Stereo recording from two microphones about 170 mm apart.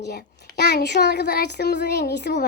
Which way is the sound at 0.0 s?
80° left.